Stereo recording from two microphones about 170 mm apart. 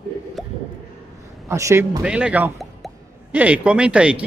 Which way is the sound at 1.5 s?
15° right (ahead or behind).